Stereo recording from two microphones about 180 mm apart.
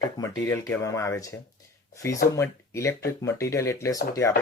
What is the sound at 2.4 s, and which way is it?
Speech, 15° left (ahead or behind).